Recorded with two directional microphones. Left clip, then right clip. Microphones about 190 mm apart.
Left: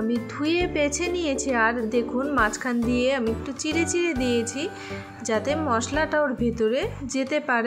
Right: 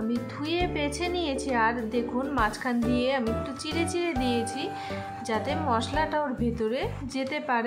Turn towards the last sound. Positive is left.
turn(degrees=20)  # may be behind; listen again after turning